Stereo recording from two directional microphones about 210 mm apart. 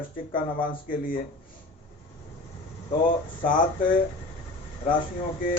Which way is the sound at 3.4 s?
40° left (ahead or behind).